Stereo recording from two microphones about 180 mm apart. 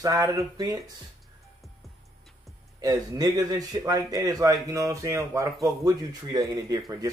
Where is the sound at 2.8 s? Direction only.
20° right (ahead or behind).